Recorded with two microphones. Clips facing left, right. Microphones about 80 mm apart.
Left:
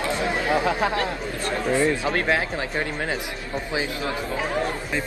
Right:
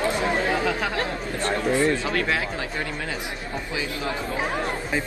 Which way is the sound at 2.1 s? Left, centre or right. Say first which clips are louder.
Left 2 dB; left.